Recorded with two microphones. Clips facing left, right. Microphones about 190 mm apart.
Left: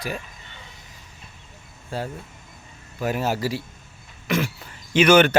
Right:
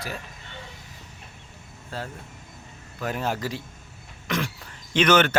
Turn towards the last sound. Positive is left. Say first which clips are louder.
# left 4 dB
turn(degrees=10)  # may be behind; listen again after turning